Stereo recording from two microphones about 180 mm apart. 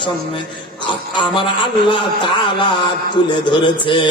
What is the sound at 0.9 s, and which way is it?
A man's voice, 25° left (ahead or behind).